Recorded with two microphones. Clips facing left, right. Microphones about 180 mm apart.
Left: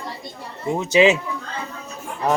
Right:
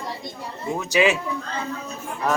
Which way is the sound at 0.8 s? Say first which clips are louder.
Left 5 dB; 25° left (ahead or behind).